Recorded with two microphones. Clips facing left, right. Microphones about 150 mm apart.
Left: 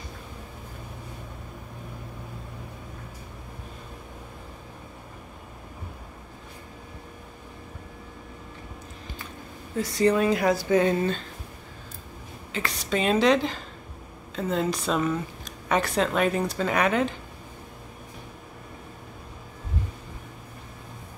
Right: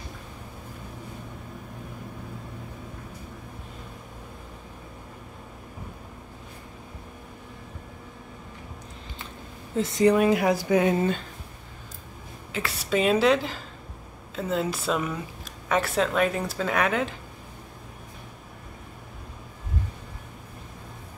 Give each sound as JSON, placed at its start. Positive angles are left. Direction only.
{"t": 9.8, "sound": "a woman's voice", "side_deg": -20}
{"t": 12.5, "sound": "a woman's voice", "side_deg": -5}